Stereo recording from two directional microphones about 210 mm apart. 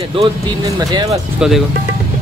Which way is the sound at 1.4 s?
5° right (ahead or behind).